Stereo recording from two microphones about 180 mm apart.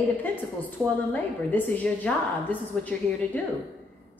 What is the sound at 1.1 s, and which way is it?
A woman's voice, 10° left (ahead or behind).